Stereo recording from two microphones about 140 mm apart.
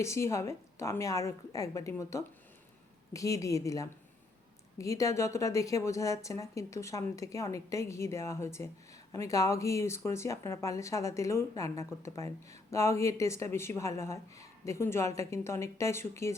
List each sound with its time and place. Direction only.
0.0 s speech: 20° left (ahead or behind)